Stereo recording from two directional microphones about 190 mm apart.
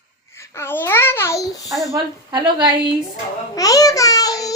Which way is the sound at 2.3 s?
25° right (ahead or behind).